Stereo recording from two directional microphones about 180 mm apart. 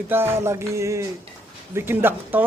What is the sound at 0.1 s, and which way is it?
Speech, 15° right (ahead or behind).